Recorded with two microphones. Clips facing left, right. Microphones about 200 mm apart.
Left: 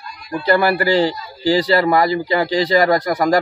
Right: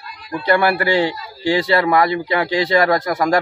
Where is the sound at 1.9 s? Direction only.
30° left (ahead or behind).